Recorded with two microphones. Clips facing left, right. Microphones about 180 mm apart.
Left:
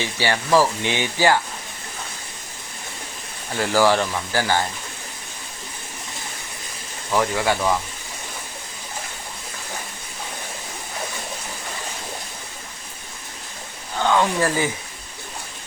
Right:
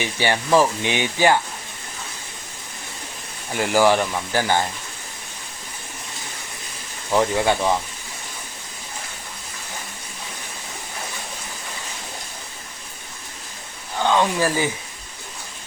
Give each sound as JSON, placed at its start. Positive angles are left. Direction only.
{"t": 0.0, "sound": "speech", "side_deg": -20}
{"t": 3.5, "sound": "speech", "side_deg": -15}
{"t": 7.1, "sound": "speech", "side_deg": -20}
{"t": 14.0, "sound": "speech", "side_deg": -15}